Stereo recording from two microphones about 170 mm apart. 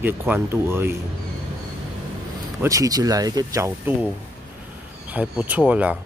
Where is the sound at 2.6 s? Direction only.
20° right (ahead or behind).